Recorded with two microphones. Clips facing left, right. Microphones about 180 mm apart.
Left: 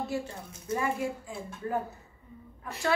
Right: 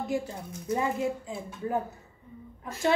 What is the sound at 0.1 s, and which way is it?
A woman's voice, 15° right (ahead or behind).